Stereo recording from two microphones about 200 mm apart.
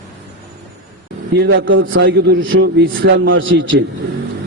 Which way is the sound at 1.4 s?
60° right (ahead or behind).